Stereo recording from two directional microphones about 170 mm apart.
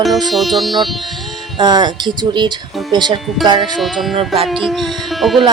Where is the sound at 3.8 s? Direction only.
Centre (ahead or behind).